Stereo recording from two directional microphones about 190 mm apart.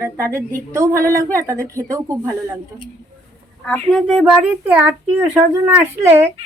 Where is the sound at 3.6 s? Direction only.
5° left (ahead or behind).